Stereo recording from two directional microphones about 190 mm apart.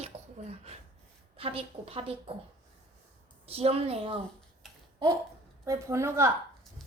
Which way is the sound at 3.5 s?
30° right (ahead or behind).